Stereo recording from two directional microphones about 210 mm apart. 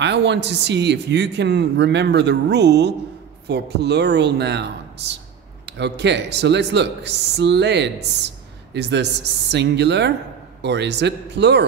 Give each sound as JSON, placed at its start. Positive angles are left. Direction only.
{"t": 0.0, "sound": "speech", "side_deg": -55}